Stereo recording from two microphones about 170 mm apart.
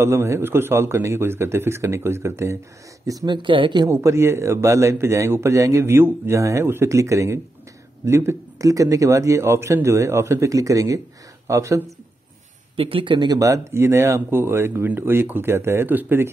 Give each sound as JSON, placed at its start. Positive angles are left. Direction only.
{"t": 0.0, "sound": "speech", "side_deg": -15}
{"t": 3.9, "sound": "speech", "side_deg": -15}
{"t": 12.7, "sound": "speech", "side_deg": -35}